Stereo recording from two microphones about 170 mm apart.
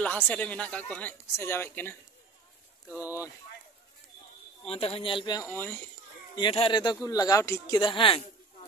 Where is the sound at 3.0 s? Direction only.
20° left (ahead or behind).